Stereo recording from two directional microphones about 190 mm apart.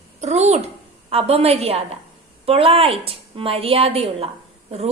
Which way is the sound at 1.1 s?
30° right (ahead or behind).